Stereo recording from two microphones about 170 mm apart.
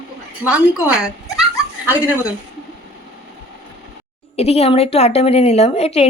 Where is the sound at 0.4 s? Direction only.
5° right (ahead or behind).